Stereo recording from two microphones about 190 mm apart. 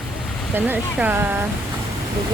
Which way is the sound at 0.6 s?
10° right (ahead or behind).